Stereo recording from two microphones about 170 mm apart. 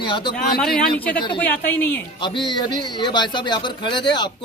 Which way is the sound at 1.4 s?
10° left (ahead or behind).